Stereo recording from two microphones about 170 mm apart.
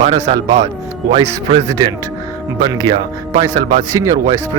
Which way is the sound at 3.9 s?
20° right (ahead or behind).